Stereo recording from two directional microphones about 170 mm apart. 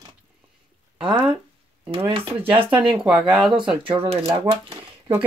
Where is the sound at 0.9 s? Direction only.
5° right (ahead or behind).